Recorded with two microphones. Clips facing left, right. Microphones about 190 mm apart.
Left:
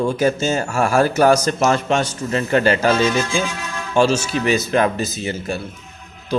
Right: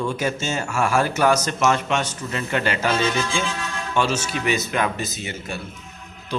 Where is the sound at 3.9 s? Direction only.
30° left (ahead or behind).